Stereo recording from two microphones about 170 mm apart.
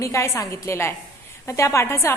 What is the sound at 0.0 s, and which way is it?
A woman's voice, 15° left (ahead or behind).